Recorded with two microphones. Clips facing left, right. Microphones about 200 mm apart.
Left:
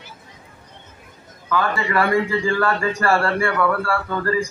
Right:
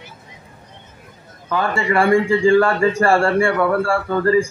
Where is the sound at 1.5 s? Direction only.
25° right (ahead or behind).